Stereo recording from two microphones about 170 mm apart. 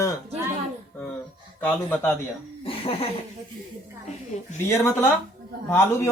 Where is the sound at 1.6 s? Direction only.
10° left (ahead or behind).